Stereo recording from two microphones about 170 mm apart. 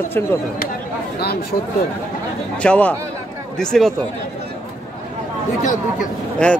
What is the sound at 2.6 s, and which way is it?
A man's voice, 10° left (ahead or behind).